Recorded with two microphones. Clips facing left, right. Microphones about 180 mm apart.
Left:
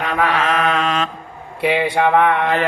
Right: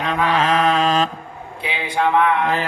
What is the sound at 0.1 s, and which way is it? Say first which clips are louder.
Mantra: right 1 dB; 35° right (ahead or behind).